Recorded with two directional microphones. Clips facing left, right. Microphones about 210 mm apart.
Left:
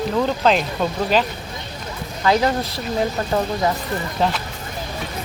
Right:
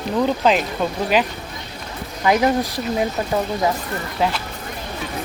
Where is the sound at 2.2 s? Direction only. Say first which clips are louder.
Right 1 dB; 15° right (ahead or behind).